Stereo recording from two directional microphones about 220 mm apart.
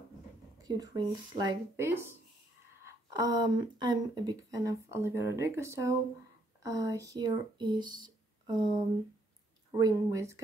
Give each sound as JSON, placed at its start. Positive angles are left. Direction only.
{"t": 0.7, "sound": "speech", "side_deg": -20}